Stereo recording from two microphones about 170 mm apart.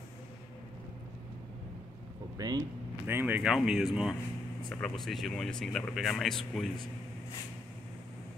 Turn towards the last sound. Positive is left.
turn(degrees=0)  # may be behind; listen again after turning